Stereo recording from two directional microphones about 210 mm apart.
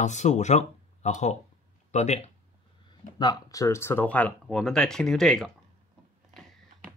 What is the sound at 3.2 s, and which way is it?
Speech, 20° left (ahead or behind).